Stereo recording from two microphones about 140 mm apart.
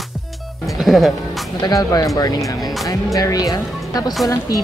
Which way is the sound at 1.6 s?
25° left (ahead or behind).